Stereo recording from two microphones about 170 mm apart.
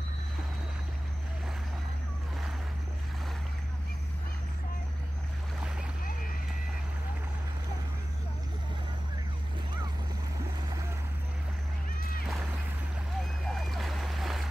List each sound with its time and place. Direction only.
13.2 s boat: centre (ahead or behind)